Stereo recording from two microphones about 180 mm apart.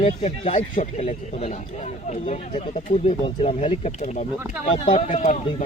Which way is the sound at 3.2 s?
30° left (ahead or behind).